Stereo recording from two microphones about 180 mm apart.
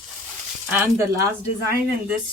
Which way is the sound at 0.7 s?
15° right (ahead or behind).